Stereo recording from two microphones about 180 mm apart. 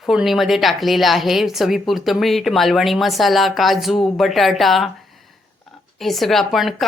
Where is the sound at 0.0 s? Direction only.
Centre (ahead or behind).